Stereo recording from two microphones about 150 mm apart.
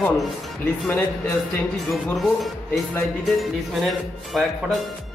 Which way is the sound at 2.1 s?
Centre (ahead or behind).